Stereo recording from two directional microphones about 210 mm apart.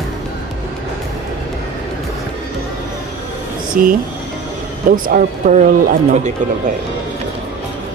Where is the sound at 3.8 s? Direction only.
40° right (ahead or behind).